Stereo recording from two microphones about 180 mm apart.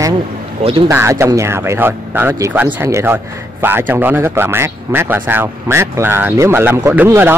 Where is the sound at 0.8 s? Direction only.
15° right (ahead or behind).